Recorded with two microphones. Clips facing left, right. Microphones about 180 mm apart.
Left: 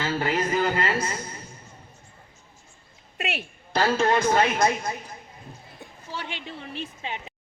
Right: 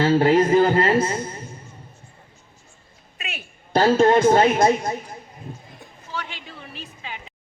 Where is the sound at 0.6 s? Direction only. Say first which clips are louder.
Right 7 dB; 45° right (ahead or behind).